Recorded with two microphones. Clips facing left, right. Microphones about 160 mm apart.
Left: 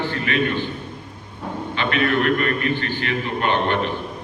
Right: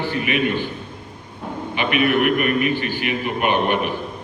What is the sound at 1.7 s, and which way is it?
A man's voice, 15° right (ahead or behind).